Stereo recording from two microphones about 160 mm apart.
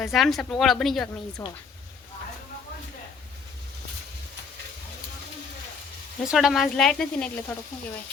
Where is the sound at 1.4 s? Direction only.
15° left (ahead or behind).